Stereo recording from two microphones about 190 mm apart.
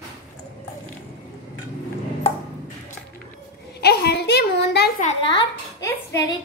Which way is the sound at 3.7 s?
60° left (ahead or behind).